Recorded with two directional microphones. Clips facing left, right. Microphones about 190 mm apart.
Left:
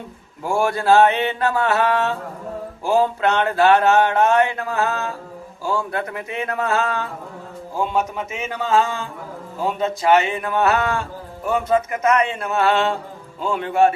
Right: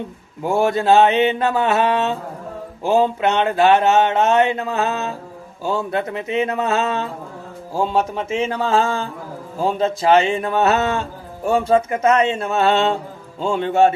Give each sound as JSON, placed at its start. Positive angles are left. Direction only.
{"t": 0.4, "sound": "mantra", "side_deg": -20}
{"t": 7.8, "sound": "speech", "side_deg": -30}
{"t": 9.6, "sound": "mantra", "side_deg": -30}